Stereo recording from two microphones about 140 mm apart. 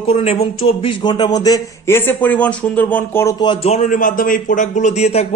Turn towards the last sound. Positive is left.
turn(degrees=50)  # may be behind; listen again after turning